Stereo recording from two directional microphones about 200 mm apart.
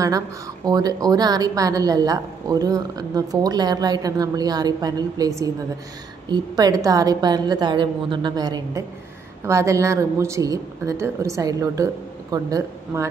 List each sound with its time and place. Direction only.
0.7 s a woman's voice: 20° right (ahead or behind)